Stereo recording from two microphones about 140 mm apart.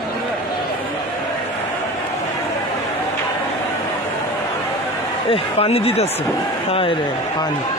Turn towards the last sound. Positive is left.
turn(degrees=45)  # may be behind; listen again after turning